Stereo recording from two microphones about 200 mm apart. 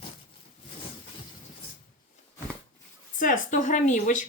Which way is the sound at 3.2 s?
40° left (ahead or behind).